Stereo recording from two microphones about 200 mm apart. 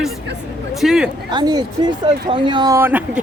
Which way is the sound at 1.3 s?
20° right (ahead or behind).